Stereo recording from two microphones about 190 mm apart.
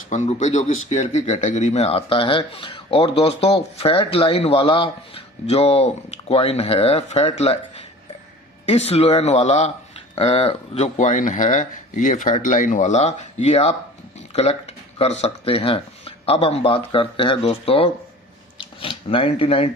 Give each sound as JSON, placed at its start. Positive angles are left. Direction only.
{"t": 0.1, "sound": "speech", "side_deg": 40}
{"t": 8.6, "sound": "speech", "side_deg": 35}